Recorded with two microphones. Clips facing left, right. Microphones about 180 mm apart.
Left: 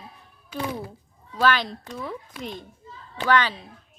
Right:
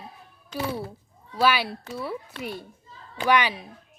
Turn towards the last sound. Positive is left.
turn(degrees=-10)  # may be behind; listen again after turning